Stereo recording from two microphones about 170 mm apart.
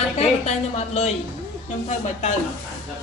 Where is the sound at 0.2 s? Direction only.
40° left (ahead or behind).